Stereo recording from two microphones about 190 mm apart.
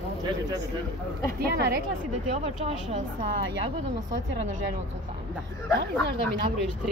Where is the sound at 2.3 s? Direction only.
30° right (ahead or behind).